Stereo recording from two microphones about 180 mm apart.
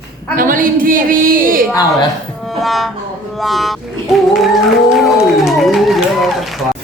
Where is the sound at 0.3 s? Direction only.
50° right (ahead or behind).